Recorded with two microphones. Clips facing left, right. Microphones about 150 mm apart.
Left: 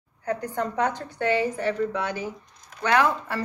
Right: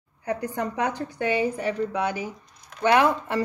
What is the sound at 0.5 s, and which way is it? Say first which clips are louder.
Speech: left 3 dB; 10° right (ahead or behind).